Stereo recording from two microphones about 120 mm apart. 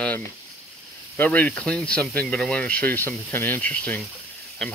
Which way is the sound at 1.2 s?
15° left (ahead or behind).